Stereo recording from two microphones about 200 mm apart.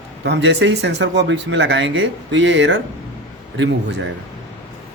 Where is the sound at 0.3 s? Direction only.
60° right (ahead or behind).